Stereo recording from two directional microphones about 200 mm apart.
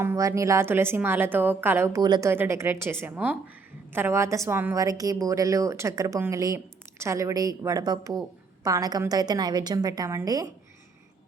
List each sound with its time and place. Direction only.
0.0 s a woman's voice: 15° right (ahead or behind)